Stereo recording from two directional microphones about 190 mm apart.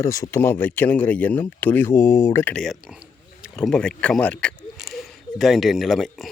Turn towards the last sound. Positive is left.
turn(degrees=0)  # may be behind; listen again after turning